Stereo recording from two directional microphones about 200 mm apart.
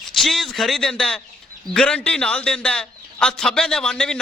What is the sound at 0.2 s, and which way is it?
A man's voice, centre (ahead or behind).